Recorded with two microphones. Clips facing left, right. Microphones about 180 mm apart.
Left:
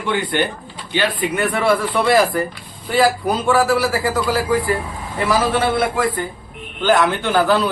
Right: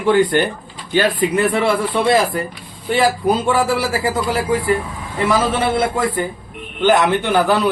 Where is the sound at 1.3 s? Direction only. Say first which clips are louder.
Right 1 dB; 25° right (ahead or behind).